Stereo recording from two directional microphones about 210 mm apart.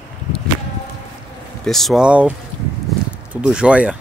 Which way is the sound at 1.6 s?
Centre (ahead or behind).